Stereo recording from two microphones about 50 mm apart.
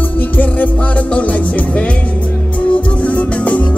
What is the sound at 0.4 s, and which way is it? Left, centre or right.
Music, left.